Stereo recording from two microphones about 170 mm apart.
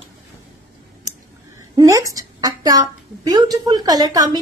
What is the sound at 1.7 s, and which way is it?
A woman's voice, 20° right (ahead or behind).